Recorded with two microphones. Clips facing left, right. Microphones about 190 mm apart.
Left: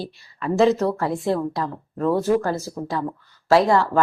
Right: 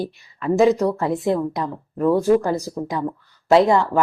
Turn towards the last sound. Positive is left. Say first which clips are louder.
# right 2 dB
turn(degrees=-20)  # may be behind; listen again after turning